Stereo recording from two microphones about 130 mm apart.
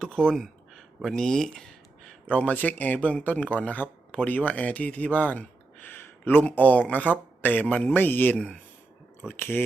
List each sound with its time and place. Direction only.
0.0 s speech: 5° left (ahead or behind)